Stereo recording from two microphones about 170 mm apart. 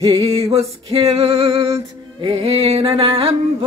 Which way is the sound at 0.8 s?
35° right (ahead or behind).